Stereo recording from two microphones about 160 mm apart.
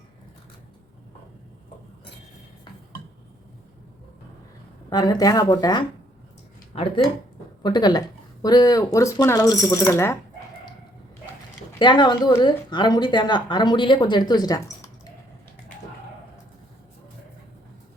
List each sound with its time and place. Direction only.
4.9 s speech: 25° left (ahead or behind)
6.7 s speech: 40° left (ahead or behind)
7.6 s speech: 25° left (ahead or behind)
11.8 s speech: 30° left (ahead or behind)